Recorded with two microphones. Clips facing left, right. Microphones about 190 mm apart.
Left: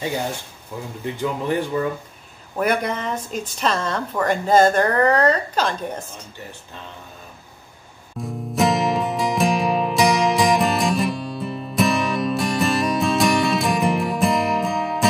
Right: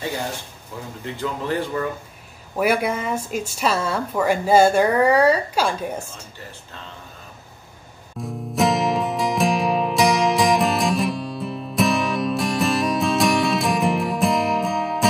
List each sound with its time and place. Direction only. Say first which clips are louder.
1.1 s speech: left 2 dB; 15° left (ahead or behind)
2.5 s speech: right 1 dB; 5° right (ahead or behind)
8.2 s music: even; centre (ahead or behind)